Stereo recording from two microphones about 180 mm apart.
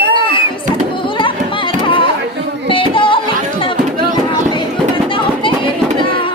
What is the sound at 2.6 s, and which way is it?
Music, 30° left (ahead or behind).